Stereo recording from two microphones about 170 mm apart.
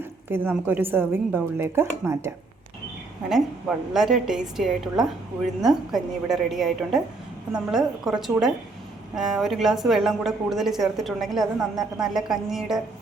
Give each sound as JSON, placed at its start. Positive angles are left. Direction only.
{"t": 0.0, "sound": "a woman's voice", "side_deg": -15}
{"t": 3.2, "sound": "a woman's voice", "side_deg": -5}